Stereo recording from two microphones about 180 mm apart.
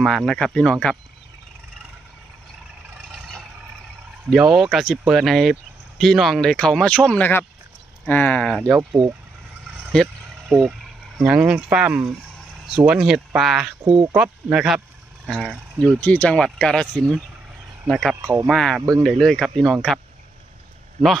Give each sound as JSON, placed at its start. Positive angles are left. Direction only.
{"t": 0.0, "sound": "speech", "side_deg": 0}
{"t": 4.3, "sound": "speech", "side_deg": -5}
{"t": 9.8, "sound": "a sound", "side_deg": 0}
{"t": 11.1, "sound": "speech", "side_deg": -5}
{"t": 18.2, "sound": "speech", "side_deg": -20}
{"t": 18.5, "sound": "speech", "side_deg": 5}
{"t": 18.8, "sound": "speech", "side_deg": -20}
{"t": 19.0, "sound": "speech", "side_deg": 5}